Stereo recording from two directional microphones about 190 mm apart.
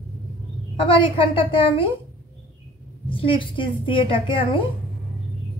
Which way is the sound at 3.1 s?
30° left (ahead or behind).